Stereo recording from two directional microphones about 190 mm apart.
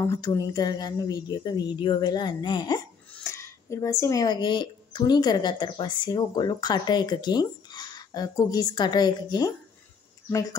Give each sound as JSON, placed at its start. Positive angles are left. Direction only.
{"t": 0.0, "sound": "speech", "side_deg": 15}
{"t": 3.1, "sound": "speech", "side_deg": 10}